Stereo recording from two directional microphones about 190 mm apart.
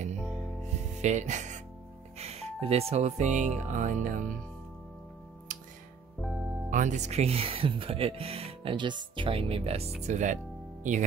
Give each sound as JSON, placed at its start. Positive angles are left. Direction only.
{"t": 0.9, "sound": "speech", "side_deg": -40}
{"t": 6.2, "sound": "music", "side_deg": 0}
{"t": 6.7, "sound": "speech", "side_deg": -40}